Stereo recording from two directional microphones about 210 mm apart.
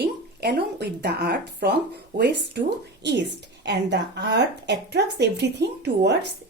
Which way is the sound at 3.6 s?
55° right (ahead or behind).